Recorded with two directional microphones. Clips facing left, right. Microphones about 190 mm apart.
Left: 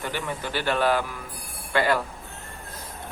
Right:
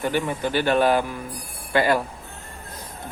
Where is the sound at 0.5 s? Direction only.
15° right (ahead or behind).